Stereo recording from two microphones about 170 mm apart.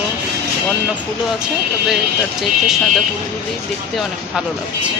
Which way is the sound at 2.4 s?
Centre (ahead or behind).